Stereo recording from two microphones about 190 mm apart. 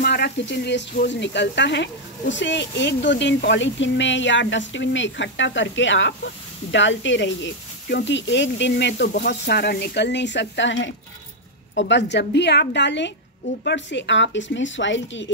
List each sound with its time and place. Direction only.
0.0 s a woman's voice: 60° left (ahead or behind); by 15.3 s 75° left (ahead or behind)